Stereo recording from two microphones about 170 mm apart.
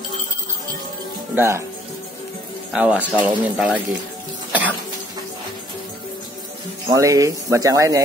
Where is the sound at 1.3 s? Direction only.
15° right (ahead or behind).